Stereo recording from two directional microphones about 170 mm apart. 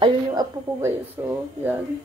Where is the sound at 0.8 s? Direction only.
15° right (ahead or behind).